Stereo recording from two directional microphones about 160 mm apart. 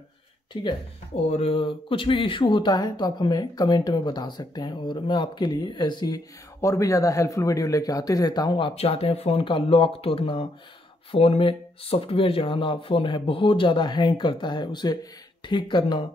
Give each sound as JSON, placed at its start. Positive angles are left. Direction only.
{"t": 0.5, "sound": "speech", "side_deg": 30}